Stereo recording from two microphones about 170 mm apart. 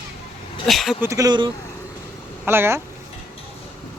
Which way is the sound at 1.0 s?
20° right (ahead or behind).